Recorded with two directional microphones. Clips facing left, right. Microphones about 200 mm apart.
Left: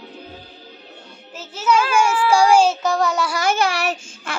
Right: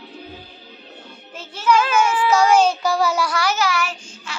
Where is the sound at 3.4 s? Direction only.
55° left (ahead or behind).